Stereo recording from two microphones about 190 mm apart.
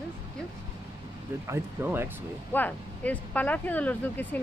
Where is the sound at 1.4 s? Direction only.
15° right (ahead or behind).